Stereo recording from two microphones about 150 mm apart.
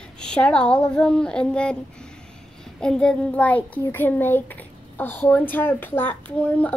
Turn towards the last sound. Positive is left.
turn(degrees=10)  # may be behind; listen again after turning